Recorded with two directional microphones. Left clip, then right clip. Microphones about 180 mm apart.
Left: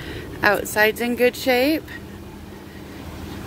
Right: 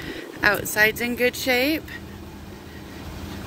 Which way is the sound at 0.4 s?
35° left (ahead or behind).